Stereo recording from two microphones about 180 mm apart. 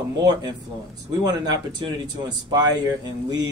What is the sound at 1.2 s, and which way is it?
Speech, 20° right (ahead or behind).